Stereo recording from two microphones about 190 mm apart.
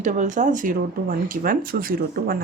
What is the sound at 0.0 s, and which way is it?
A woman's voice, 40° right (ahead or behind).